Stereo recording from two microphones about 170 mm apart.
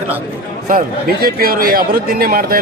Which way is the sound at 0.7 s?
60° right (ahead or behind).